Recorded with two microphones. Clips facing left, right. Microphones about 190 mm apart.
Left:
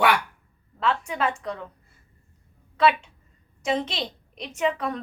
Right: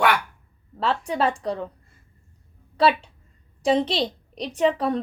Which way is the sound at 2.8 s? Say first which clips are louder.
Right 1 dB; 35° right (ahead or behind).